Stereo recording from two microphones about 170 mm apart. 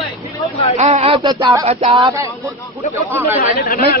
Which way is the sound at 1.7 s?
40° right (ahead or behind).